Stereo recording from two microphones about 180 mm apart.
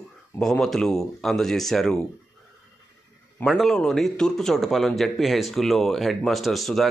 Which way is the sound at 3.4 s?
Centre (ahead or behind).